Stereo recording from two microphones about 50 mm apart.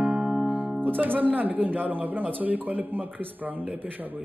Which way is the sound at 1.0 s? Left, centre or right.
Right.